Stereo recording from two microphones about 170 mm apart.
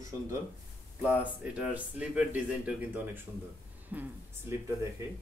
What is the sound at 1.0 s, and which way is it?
Speech, 10° right (ahead or behind).